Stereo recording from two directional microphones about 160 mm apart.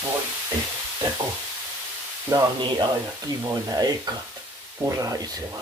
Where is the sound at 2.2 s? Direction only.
20° right (ahead or behind).